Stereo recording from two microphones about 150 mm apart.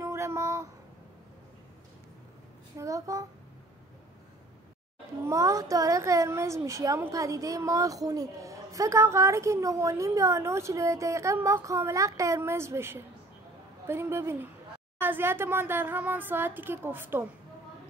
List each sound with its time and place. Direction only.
0.0 s a sound: 20° right (ahead or behind)
2.8 s a woman's voice: 20° right (ahead or behind)
5.2 s a woman's voice: 20° right (ahead or behind)